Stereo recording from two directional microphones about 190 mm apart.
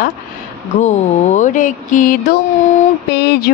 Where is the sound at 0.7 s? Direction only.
40° left (ahead or behind).